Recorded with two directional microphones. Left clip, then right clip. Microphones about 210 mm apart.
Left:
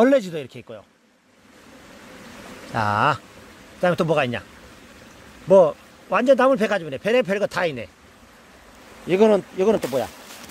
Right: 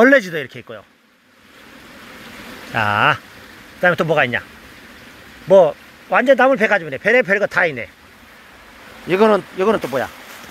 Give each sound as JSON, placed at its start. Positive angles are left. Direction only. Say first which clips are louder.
{"t": 0.0, "sound": "speech", "louder": "right 6 dB", "side_deg": 5}
{"t": 2.7, "sound": "a man's voice", "louder": "right 5 dB", "side_deg": 15}
{"t": 5.5, "sound": "a man's voice", "louder": "right 3 dB", "side_deg": 20}
{"t": 9.0, "sound": "a man's voice", "louder": "right 3 dB", "side_deg": 10}